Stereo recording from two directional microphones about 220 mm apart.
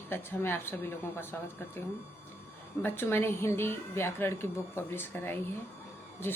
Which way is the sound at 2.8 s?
10° left (ahead or behind).